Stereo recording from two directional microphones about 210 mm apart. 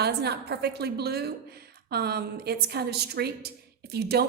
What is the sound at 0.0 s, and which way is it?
A woman's voice, 50° right (ahead or behind).